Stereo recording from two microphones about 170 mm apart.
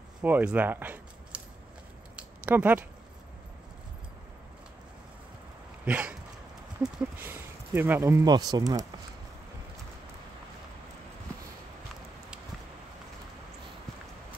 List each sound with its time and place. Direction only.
0.2 s speech: 10° right (ahead or behind)
2.1 s a sound: 10° right (ahead or behind)
5.9 s speech: 10° right (ahead or behind)